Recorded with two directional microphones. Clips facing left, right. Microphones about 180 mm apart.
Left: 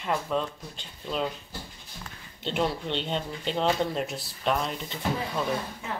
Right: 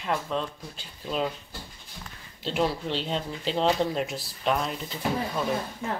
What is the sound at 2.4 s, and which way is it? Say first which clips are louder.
Speech: right 1 dB; centre (ahead or behind).